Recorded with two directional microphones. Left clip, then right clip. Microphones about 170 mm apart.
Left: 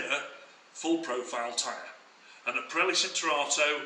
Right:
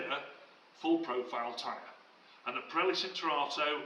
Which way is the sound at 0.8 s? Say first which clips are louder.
Left 2 dB; 15° left (ahead or behind).